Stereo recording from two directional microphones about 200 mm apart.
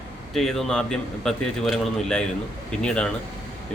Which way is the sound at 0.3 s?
Centre (ahead or behind).